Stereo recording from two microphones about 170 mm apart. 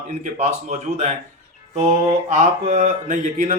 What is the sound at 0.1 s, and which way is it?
Speech, 45° right (ahead or behind).